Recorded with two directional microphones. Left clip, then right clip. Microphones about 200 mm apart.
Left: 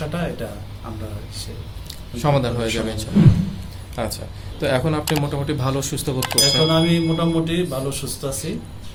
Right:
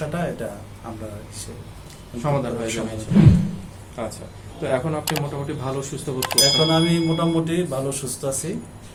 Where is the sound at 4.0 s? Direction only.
55° left (ahead or behind).